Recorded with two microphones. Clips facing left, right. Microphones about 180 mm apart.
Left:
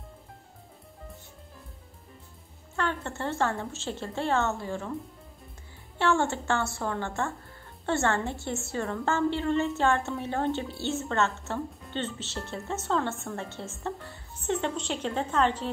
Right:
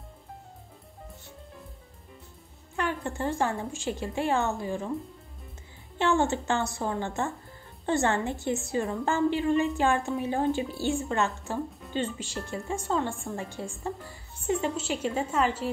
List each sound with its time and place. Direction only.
2.7 s a woman's voice: 15° right (ahead or behind)
5.9 s a woman's voice: 20° right (ahead or behind)